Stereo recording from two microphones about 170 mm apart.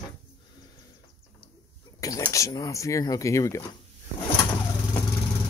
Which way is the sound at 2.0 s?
20° left (ahead or behind).